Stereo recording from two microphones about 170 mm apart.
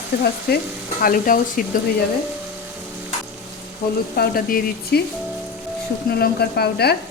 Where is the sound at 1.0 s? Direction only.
55° left (ahead or behind).